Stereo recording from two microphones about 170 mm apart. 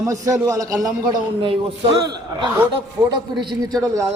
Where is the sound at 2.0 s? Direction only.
25° right (ahead or behind).